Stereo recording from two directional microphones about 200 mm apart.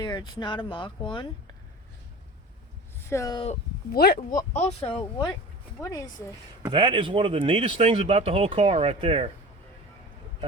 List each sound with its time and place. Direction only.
0.0 s speech: 20° left (ahead or behind)
3.1 s speech: 15° left (ahead or behind)
3.9 s speech: 50° left (ahead or behind)
4.4 s speech: 20° left (ahead or behind)
6.6 s speech: 25° right (ahead or behind)